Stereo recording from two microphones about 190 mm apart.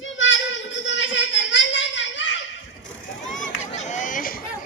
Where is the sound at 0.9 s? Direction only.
70° left (ahead or behind).